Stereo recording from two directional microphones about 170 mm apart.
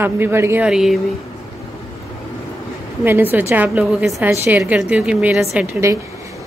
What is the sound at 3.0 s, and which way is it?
A woman's voice, 10° right (ahead or behind).